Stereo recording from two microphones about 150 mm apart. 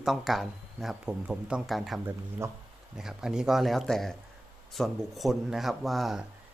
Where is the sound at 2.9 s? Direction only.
5° right (ahead or behind).